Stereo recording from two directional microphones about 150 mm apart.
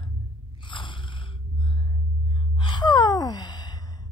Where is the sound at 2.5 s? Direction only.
30° left (ahead or behind).